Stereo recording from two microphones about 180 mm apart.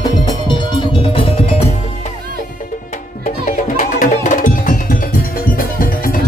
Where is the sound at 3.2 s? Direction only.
45° left (ahead or behind).